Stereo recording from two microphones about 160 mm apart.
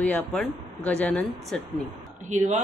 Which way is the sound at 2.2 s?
45° right (ahead or behind).